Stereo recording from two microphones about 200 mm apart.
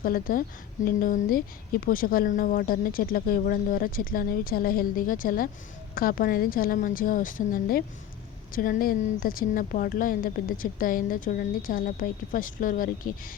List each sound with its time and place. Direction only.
0.0 s speech: 45° left (ahead or behind)